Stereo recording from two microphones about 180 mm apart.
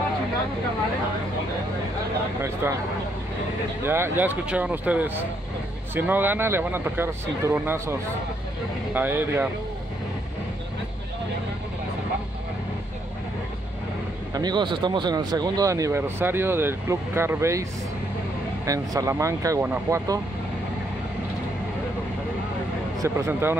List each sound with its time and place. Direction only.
2.6 s speech: 15° right (ahead or behind)
3.8 s speech: 15° right (ahead or behind)
14.3 s speech: 25° right (ahead or behind)
18.7 s speech: 20° right (ahead or behind)
22.9 s speech: 15° right (ahead or behind)